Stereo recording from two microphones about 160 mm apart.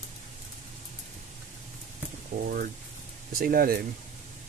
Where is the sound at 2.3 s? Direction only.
60° right (ahead or behind).